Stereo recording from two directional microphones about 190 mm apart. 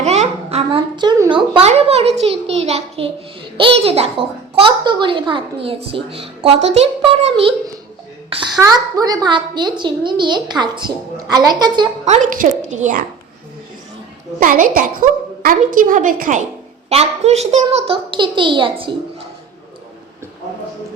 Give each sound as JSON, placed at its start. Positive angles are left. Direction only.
{"t": 0.0, "sound": "a woman's voice", "side_deg": -35}
{"t": 12.0, "sound": "a woman's voice", "side_deg": -40}
{"t": 14.3, "sound": "a woman's voice", "side_deg": -45}